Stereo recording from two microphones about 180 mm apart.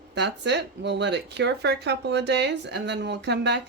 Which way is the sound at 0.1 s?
70° right (ahead or behind).